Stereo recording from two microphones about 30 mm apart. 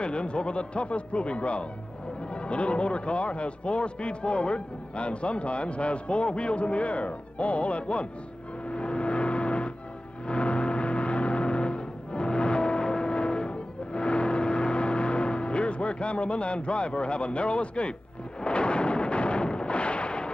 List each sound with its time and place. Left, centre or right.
0.0 s a man's voice: left
8.6 s vehicle: left
18.4 s a sound: left